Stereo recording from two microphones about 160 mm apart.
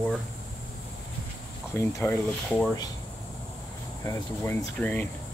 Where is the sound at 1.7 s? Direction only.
15° left (ahead or behind).